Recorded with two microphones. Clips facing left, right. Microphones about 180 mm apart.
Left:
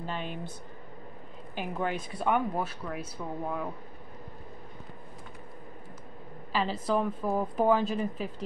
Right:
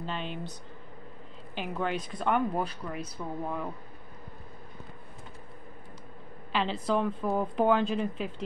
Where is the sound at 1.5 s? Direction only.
10° left (ahead or behind).